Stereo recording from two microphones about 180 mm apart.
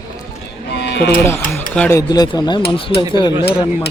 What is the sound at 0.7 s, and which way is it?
Music, 70° left (ahead or behind).